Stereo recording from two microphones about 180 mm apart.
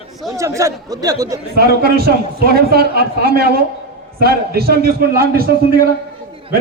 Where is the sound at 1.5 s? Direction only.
60° right (ahead or behind).